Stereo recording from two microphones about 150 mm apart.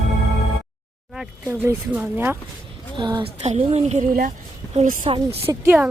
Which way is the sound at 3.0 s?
30° right (ahead or behind).